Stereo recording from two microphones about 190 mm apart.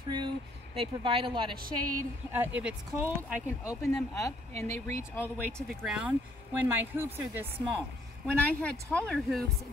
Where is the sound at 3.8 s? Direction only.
15° left (ahead or behind).